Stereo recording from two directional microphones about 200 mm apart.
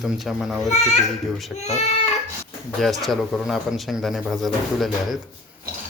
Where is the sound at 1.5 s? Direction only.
35° left (ahead or behind).